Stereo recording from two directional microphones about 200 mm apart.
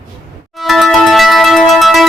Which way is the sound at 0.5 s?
Centre (ahead or behind).